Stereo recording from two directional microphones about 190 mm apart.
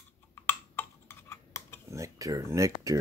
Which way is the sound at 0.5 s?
10° left (ahead or behind).